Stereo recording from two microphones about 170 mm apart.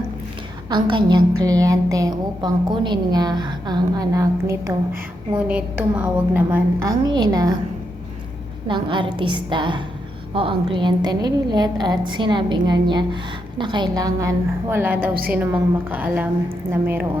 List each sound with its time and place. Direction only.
0.7 s a woman's voice: 25° right (ahead or behind)
5.5 s a woman's voice: 5° right (ahead or behind)
7.1 s a woman's voice: 25° right (ahead or behind)
8.6 s a woman's voice: 30° right (ahead or behind); by 17.1 s 10° right (ahead or behind)